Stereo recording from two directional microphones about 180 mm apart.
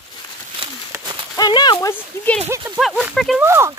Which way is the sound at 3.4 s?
15° right (ahead or behind).